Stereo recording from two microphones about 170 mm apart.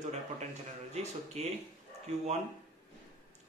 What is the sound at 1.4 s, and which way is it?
Speech, 40° right (ahead or behind).